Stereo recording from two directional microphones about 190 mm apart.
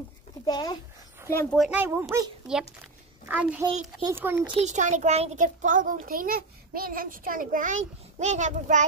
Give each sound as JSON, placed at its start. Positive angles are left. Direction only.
{"t": 0.5, "sound": "speech", "side_deg": 20}
{"t": 1.6, "sound": "speech", "side_deg": -5}
{"t": 3.3, "sound": "speech", "side_deg": -10}
{"t": 4.6, "sound": "a child's voice", "side_deg": -40}